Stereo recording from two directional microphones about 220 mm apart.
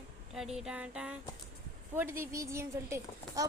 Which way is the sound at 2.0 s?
10° right (ahead or behind).